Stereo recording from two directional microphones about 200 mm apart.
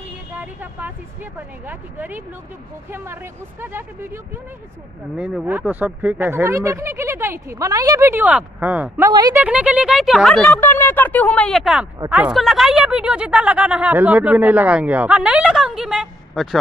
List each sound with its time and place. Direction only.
0.3 s vehicle: 10° right (ahead or behind)
1.7 s speech: 10° right (ahead or behind)
9.1 s a woman's voice: 20° right (ahead or behind)
9.4 s speech: 5° right (ahead or behind)